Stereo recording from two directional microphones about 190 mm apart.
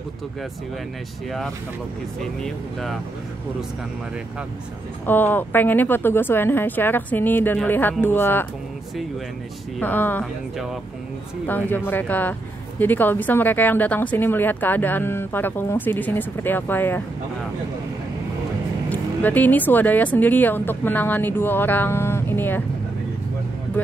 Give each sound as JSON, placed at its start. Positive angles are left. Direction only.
{"t": 2.4, "sound": "speech", "side_deg": 0}
{"t": 5.0, "sound": "speech", "side_deg": 10}
{"t": 9.8, "sound": "speech", "side_deg": 10}
{"t": 11.4, "sound": "speech", "side_deg": 10}
{"t": 18.9, "sound": "speech", "side_deg": 10}